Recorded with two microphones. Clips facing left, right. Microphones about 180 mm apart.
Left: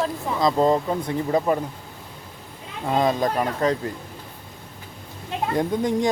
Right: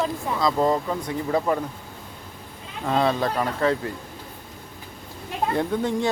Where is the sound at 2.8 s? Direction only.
15° left (ahead or behind).